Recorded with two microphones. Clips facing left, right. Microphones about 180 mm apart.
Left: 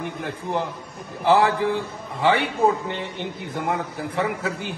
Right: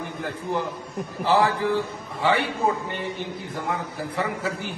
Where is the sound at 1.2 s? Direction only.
20° left (ahead or behind).